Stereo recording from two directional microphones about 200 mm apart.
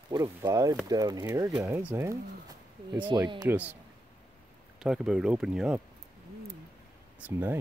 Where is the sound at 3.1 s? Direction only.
20° right (ahead or behind).